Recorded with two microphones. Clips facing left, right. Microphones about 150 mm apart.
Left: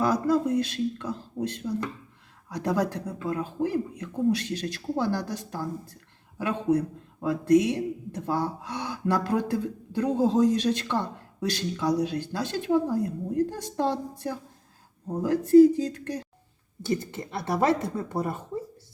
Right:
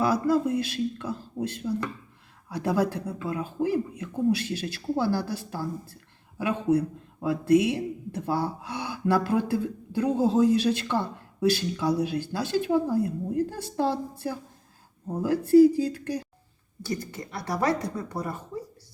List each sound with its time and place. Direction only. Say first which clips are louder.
0.0 s speech: even; 5° right (ahead or behind)
16.8 s speech: left 4 dB; 25° left (ahead or behind)